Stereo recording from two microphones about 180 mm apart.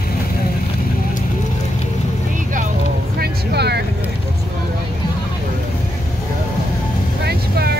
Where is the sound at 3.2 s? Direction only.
65° right (ahead or behind).